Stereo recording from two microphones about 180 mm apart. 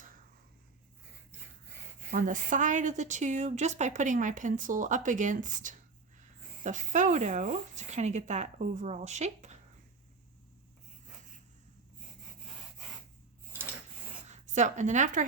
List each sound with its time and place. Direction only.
2.0 s a woman's voice: 45° right (ahead or behind)
14.3 s a woman's voice: 40° right (ahead or behind)